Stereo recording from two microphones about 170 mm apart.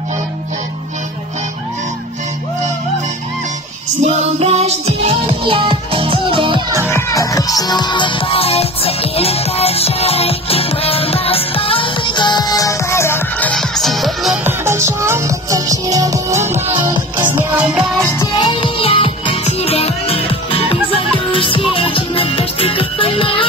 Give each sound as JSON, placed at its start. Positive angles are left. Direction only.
{"t": 4.0, "sound": "music", "side_deg": -40}
{"t": 6.9, "sound": "music", "side_deg": 20}
{"t": 14.4, "sound": "music", "side_deg": -15}
{"t": 16.3, "sound": "music", "side_deg": -40}
{"t": 16.7, "sound": "music", "side_deg": -25}
{"t": 17.4, "sound": "music", "side_deg": -10}
{"t": 18.4, "sound": "music", "side_deg": 30}